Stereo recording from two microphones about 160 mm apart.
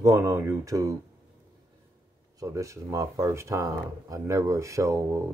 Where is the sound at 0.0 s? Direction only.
15° right (ahead or behind).